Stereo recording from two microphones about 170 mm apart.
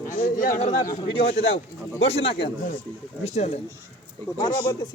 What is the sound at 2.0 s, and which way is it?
Speech, 35° left (ahead or behind).